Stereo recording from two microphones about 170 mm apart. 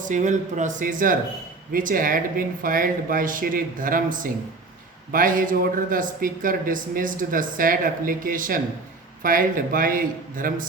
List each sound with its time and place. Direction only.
0.0 s speech: 45° right (ahead or behind)